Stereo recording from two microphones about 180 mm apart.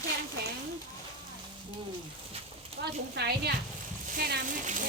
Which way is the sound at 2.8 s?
65° right (ahead or behind).